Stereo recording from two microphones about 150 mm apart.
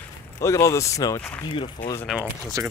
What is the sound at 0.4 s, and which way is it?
Speech, 20° left (ahead or behind).